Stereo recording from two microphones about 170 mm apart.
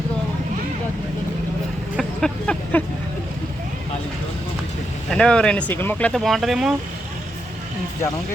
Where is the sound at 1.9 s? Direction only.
5° left (ahead or behind).